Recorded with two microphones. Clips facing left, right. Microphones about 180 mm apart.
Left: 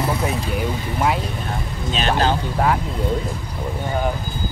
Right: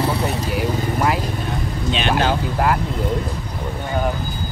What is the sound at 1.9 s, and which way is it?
Speech, 35° left (ahead or behind).